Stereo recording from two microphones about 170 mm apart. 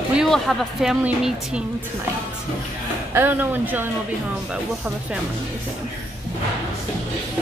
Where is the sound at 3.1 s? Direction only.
10° right (ahead or behind).